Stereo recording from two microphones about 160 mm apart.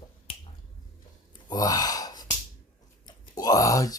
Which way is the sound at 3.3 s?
25° left (ahead or behind).